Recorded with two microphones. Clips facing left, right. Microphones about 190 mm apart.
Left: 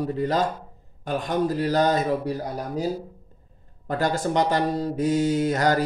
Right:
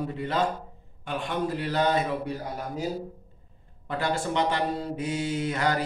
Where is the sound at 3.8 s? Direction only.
40° left (ahead or behind).